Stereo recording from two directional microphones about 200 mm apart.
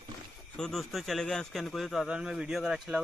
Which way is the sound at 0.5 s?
Centre (ahead or behind).